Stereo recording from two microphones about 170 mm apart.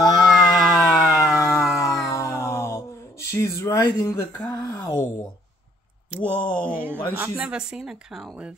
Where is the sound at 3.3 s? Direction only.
20° left (ahead or behind).